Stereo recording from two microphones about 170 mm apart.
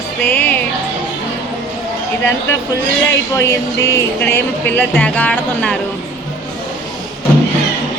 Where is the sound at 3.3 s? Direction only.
15° left (ahead or behind).